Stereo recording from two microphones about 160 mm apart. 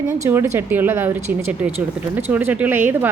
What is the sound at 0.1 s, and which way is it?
A woman's voice, 15° right (ahead or behind).